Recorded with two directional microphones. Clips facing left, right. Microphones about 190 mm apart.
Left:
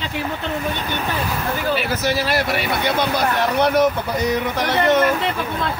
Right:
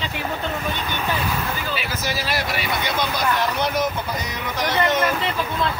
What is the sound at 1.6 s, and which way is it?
Speech, 55° left (ahead or behind).